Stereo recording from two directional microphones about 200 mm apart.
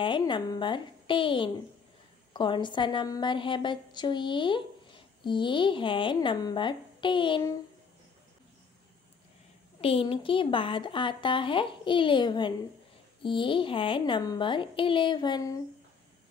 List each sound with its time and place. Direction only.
0.0 s a woman's voice: 25° left (ahead or behind)
9.8 s a woman's voice: 30° left (ahead or behind)